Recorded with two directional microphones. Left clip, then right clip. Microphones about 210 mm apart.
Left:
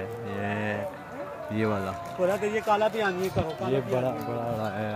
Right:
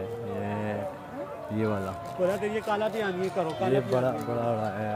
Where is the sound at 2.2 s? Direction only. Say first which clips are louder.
Left 2 dB; 35° left (ahead or behind).